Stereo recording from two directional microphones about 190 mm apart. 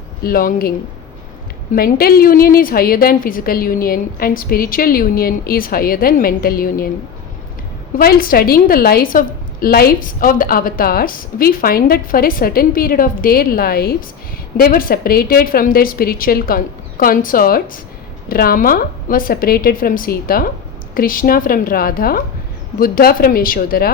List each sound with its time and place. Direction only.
0.2 s a woman's voice: 50° left (ahead or behind)
1.7 s a woman's voice: 55° left (ahead or behind)
7.9 s a woman's voice: 50° left (ahead or behind)